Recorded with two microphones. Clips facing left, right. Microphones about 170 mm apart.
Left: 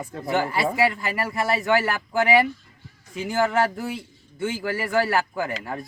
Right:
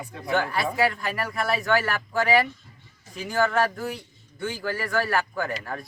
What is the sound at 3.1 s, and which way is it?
Speech, 25° left (ahead or behind).